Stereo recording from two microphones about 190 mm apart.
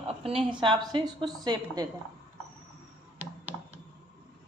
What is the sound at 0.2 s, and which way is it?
A woman's voice, 30° right (ahead or behind).